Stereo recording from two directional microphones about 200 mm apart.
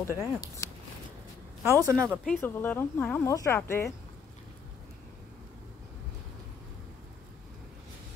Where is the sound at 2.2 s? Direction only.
10° left (ahead or behind).